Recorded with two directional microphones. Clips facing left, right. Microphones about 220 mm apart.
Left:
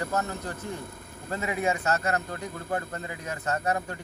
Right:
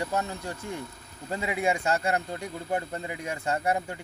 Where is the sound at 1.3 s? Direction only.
15° right (ahead or behind).